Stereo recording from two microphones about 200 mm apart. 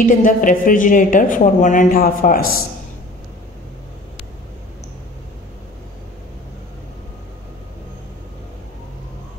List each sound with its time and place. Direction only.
0.0 s a woman's voice: 40° left (ahead or behind)